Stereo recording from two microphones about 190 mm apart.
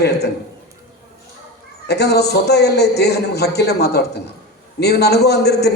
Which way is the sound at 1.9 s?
60° left (ahead or behind).